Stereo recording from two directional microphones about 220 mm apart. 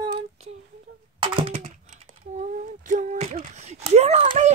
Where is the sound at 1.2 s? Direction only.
25° right (ahead or behind).